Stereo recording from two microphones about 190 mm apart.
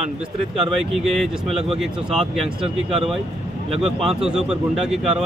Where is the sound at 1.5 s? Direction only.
30° right (ahead or behind).